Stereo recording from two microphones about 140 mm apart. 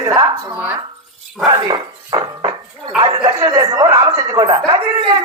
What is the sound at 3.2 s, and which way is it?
Chuckle, 30° right (ahead or behind).